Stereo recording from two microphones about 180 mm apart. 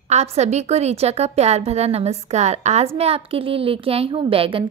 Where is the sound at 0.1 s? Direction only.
40° right (ahead or behind).